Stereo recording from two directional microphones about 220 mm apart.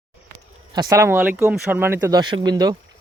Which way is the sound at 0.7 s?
15° right (ahead or behind).